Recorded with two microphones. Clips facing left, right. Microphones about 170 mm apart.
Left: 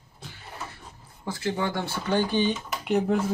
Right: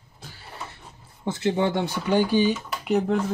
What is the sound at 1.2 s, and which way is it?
Speech, 25° right (ahead or behind).